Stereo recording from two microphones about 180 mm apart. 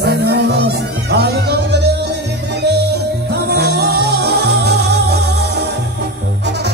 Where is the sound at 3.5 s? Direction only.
65° right (ahead or behind).